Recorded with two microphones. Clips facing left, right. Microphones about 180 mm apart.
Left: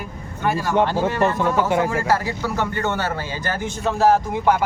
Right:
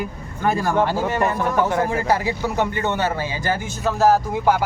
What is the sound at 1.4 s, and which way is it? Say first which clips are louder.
Speech: left 1 dB; 20° left (ahead or behind).